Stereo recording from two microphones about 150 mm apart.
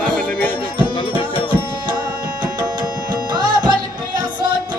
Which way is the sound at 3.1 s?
30° right (ahead or behind).